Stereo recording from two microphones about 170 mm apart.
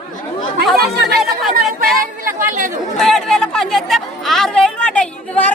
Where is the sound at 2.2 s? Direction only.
55° right (ahead or behind).